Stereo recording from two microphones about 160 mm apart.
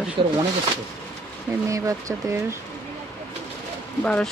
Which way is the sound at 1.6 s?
20° right (ahead or behind).